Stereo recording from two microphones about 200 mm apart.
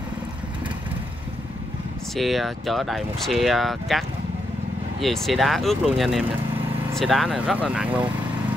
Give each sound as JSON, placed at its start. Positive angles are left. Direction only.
{"t": 2.1, "sound": "speech", "side_deg": 0}
{"t": 5.0, "sound": "speech", "side_deg": 0}